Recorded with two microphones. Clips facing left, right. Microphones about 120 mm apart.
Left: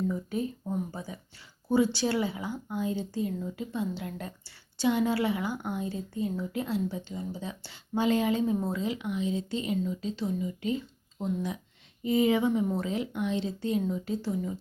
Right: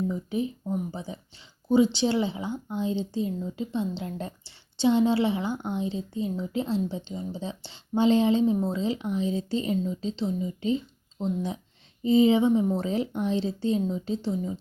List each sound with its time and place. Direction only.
0.1 s a woman's voice: 20° right (ahead or behind)